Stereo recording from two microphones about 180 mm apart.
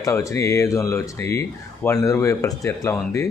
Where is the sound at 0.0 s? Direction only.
15° left (ahead or behind).